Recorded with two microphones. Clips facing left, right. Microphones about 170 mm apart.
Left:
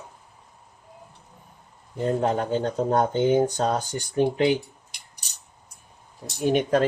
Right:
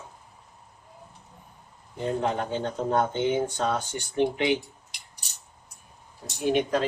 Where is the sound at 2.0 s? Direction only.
40° left (ahead or behind).